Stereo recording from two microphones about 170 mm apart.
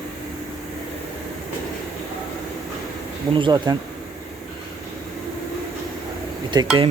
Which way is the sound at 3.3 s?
30° right (ahead or behind).